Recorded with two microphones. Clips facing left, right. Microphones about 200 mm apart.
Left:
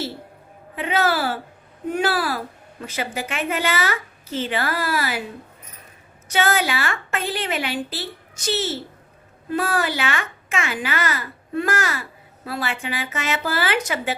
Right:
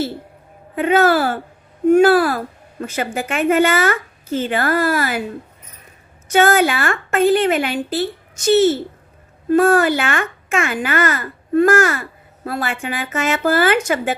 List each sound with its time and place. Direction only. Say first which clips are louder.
0.8 s a child's voice: right 7 dB; 50° right (ahead or behind)
6.3 s a child's voice: right 7 dB; 50° right (ahead or behind)